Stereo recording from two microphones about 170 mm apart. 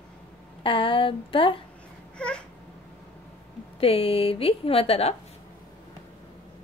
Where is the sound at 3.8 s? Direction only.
35° left (ahead or behind).